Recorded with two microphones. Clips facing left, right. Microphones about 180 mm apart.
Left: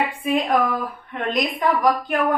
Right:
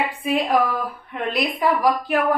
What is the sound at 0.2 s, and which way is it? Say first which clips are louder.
A woman's voice: right 1 dB; centre (ahead or behind).